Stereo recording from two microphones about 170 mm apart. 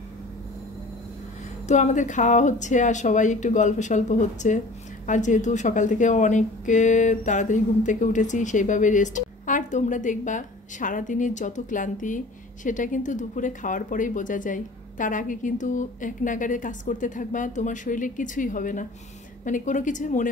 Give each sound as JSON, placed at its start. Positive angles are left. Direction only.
{"t": 1.7, "sound": "speech", "side_deg": 45}